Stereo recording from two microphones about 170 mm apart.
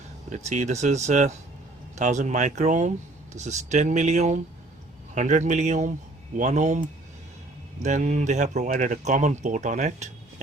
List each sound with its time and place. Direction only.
0.3 s speech: 45° right (ahead or behind)